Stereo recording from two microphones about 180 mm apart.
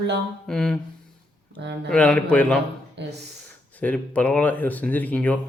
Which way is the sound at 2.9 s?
70° right (ahead or behind).